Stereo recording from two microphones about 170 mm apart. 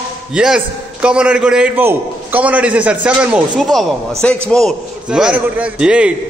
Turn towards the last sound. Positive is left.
turn(degrees=-5)  # may be behind; listen again after turning